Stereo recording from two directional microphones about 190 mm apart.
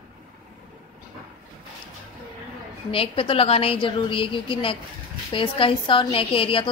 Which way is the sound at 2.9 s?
30° left (ahead or behind).